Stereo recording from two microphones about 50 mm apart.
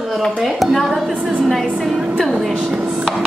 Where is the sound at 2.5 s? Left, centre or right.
Centre.